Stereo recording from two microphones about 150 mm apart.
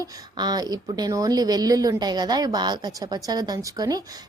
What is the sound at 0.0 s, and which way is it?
A woman's voice, 25° right (ahead or behind).